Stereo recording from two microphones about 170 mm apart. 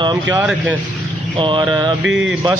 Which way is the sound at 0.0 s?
25° right (ahead or behind).